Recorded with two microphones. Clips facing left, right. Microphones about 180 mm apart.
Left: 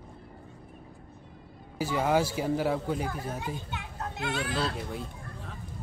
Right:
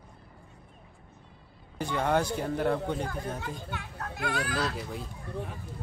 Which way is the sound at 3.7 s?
20° left (ahead or behind).